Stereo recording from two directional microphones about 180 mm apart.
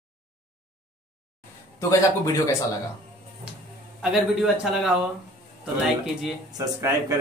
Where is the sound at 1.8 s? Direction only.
15° left (ahead or behind).